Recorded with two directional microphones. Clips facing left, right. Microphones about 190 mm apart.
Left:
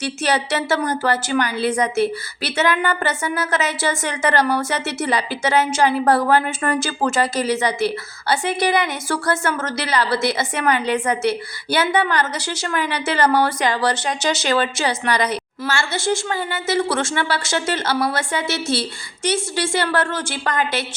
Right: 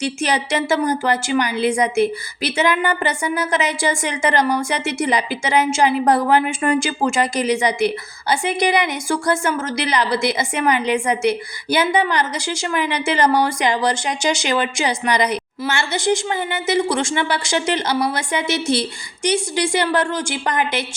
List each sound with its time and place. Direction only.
0.0 s a woman's voice: 10° right (ahead or behind)